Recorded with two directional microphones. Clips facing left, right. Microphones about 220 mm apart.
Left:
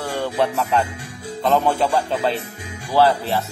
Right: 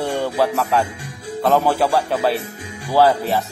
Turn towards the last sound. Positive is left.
turn(degrees=-10)  # may be behind; listen again after turning